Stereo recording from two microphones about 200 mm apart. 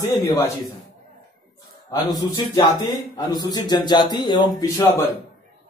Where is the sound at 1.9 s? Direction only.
20° left (ahead or behind).